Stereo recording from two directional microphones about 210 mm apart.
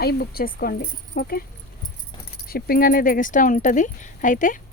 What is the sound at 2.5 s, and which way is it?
Speech, 45° left (ahead or behind).